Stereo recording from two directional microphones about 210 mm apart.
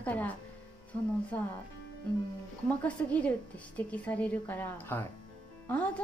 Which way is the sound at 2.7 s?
5° left (ahead or behind).